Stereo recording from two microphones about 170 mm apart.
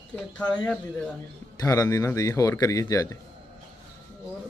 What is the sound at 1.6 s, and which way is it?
A man's voice, 20° left (ahead or behind).